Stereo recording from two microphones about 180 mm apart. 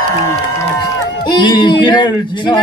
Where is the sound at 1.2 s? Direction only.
25° left (ahead or behind).